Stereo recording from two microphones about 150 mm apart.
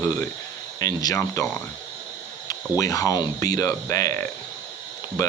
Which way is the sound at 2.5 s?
20° left (ahead or behind).